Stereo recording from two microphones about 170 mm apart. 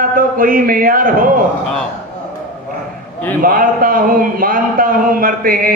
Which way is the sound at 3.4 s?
55° right (ahead or behind).